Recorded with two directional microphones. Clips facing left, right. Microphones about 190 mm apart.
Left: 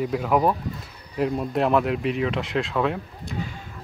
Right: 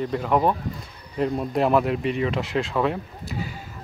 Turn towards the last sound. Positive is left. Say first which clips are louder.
# even
turn(degrees=-5)  # may be behind; listen again after turning